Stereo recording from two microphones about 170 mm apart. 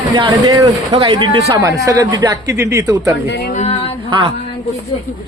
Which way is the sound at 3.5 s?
40° left (ahead or behind).